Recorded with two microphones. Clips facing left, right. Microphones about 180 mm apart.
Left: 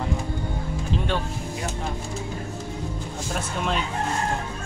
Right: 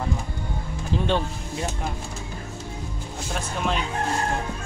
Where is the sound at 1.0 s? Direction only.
20° right (ahead or behind).